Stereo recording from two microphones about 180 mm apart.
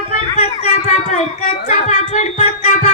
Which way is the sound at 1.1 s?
40° left (ahead or behind).